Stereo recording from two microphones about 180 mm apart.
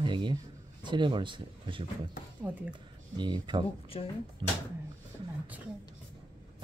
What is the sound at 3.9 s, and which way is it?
Speech, 35° left (ahead or behind).